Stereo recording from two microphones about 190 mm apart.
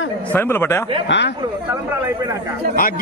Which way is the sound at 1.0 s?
70° left (ahead or behind).